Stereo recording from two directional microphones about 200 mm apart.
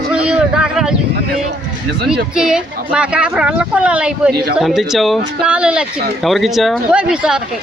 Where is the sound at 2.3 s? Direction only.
5° right (ahead or behind).